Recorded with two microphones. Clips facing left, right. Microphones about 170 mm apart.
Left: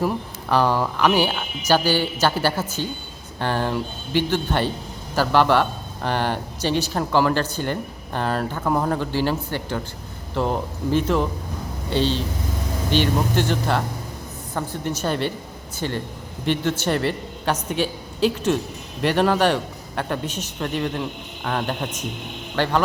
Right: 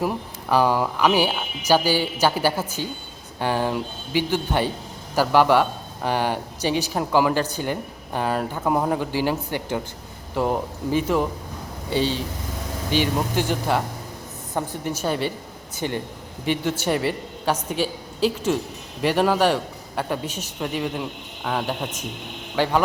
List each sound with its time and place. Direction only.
0.0 s a man's voice: 10° right (ahead or behind)